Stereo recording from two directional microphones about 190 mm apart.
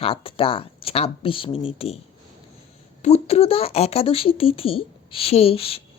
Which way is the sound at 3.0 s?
35° left (ahead or behind).